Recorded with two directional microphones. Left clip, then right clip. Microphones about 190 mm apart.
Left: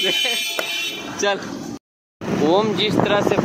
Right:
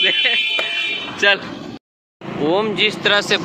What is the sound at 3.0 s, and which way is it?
Speech, 5° right (ahead or behind).